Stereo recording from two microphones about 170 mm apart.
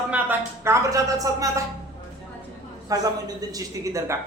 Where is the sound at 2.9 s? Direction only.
20° right (ahead or behind).